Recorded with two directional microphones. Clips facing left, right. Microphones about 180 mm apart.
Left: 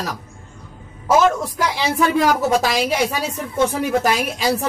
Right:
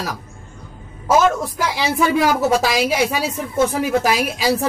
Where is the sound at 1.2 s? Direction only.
5° right (ahead or behind).